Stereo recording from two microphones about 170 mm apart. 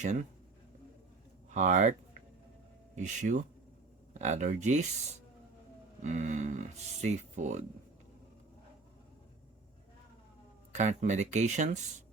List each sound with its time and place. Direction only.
0.0 s speech: 45° right (ahead or behind)
1.5 s speech: 45° right (ahead or behind)
6.0 s speech: 45° right (ahead or behind)
10.8 s speech: 45° right (ahead or behind)